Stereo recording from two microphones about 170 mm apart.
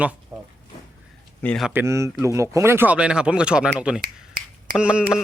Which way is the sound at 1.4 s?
10° left (ahead or behind).